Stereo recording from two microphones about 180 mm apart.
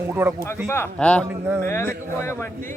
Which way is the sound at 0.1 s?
10° right (ahead or behind).